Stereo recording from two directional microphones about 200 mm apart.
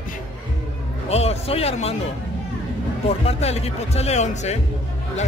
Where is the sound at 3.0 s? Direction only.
30° left (ahead or behind).